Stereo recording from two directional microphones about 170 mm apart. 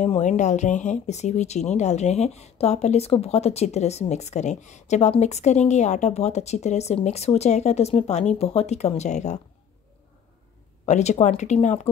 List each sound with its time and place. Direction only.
0.0 s speech: 45° left (ahead or behind)
10.9 s speech: 40° left (ahead or behind)